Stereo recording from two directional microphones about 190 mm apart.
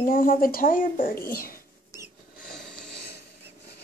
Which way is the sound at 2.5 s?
Centre (ahead or behind).